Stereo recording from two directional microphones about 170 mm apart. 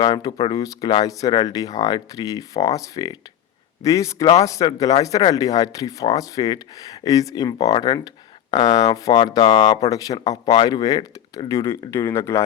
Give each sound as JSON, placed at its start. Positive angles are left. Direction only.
{"t": 0.0, "sound": "speech", "side_deg": 25}